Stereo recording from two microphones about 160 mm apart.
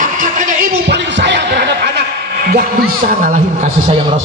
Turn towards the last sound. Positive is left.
turn(degrees=-60)  # may be behind; listen again after turning